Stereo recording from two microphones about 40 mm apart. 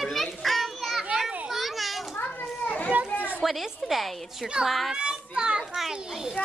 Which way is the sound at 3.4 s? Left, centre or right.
Centre.